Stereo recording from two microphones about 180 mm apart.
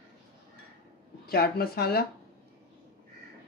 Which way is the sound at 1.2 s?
60° left (ahead or behind).